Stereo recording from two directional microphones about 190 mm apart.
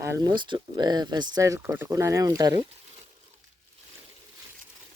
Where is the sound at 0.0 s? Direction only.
15° right (ahead or behind).